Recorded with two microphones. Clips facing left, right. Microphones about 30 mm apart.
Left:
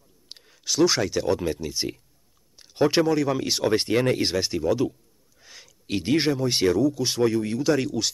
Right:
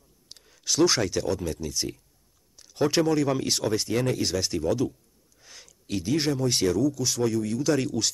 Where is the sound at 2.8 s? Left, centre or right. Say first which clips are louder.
Left 2 dB; centre.